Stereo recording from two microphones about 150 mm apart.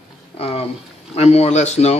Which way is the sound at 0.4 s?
40° left (ahead or behind).